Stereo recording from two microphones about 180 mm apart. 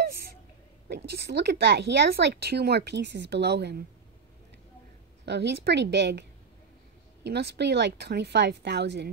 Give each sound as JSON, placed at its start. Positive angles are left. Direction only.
{"t": 0.8, "sound": "a woman's voice", "side_deg": -65}
{"t": 5.2, "sound": "a woman's voice", "side_deg": -70}
{"t": 7.2, "sound": "a woman's voice", "side_deg": -65}